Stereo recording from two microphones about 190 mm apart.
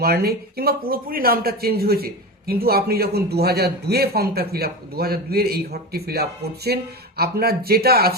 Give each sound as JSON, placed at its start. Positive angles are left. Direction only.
{"t": 0.0, "sound": "speech", "side_deg": -55}